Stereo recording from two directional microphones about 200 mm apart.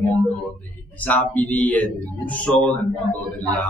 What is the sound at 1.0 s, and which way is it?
Speech, 10° left (ahead or behind).